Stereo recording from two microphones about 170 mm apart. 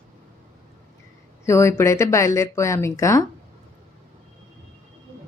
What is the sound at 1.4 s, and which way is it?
A woman's voice, 15° left (ahead or behind).